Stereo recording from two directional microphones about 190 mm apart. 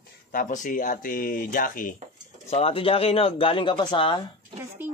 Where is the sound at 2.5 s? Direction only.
30° left (ahead or behind).